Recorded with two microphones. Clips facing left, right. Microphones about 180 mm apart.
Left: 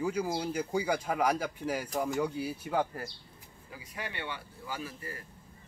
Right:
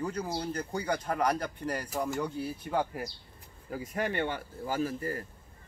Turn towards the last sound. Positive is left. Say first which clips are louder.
# right 9 dB
turn(degrees=-45)  # may be behind; listen again after turning